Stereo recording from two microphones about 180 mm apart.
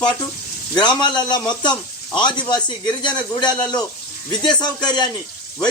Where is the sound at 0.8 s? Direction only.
25° left (ahead or behind).